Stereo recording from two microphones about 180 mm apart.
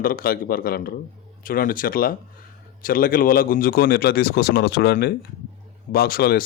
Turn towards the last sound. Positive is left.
turn(degrees=55)  # may be behind; listen again after turning